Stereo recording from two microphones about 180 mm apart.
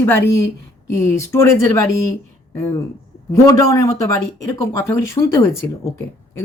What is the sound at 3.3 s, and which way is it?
Speech, 20° left (ahead or behind).